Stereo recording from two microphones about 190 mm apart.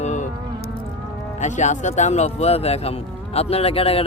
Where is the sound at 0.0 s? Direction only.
40° left (ahead or behind).